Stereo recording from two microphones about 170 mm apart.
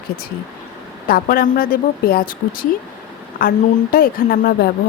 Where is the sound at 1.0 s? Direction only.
60° left (ahead or behind).